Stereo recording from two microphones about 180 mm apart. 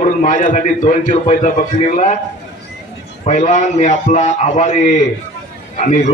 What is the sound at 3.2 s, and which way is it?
A man's voice, 40° left (ahead or behind).